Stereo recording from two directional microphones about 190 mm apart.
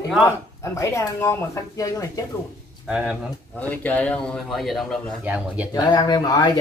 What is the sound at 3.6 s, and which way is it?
Speech, 10° left (ahead or behind).